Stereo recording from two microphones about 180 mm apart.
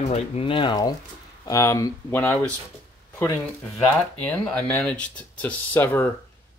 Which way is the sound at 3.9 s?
5° left (ahead or behind).